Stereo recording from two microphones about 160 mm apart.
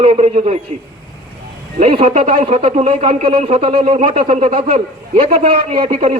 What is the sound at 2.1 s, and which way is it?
Speech, 55° right (ahead or behind).